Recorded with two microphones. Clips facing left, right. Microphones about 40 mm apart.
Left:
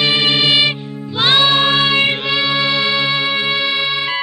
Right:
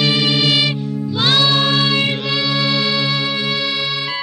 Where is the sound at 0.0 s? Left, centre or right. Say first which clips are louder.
Left 2 dB; left.